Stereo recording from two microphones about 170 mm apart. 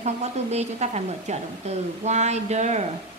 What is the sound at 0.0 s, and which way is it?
A woman's voice, 40° right (ahead or behind).